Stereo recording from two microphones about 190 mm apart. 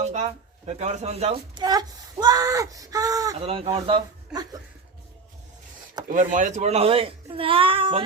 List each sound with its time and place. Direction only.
0.0 s speech: 35° right (ahead or behind); by 3.3 s 20° right (ahead or behind)
3.4 s speech: 30° right (ahead or behind)
6.1 s speech: 40° right (ahead or behind)